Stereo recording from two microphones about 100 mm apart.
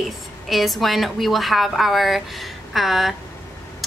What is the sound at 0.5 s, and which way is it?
A woman's voice, centre (ahead or behind).